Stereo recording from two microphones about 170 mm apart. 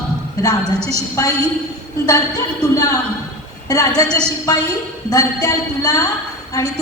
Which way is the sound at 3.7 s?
20° left (ahead or behind).